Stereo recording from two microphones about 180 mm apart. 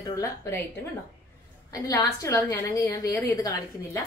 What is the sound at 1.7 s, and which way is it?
A woman's voice, 20° left (ahead or behind).